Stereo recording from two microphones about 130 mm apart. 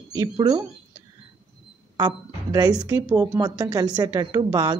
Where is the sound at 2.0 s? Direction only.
30° right (ahead or behind).